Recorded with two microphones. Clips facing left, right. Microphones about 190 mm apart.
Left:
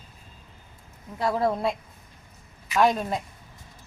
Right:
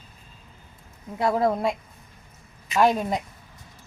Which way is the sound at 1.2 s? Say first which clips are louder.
Right 2 dB; 20° right (ahead or behind).